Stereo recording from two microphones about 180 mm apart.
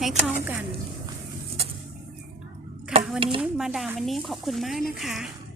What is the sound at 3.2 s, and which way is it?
Speech, 30° right (ahead or behind).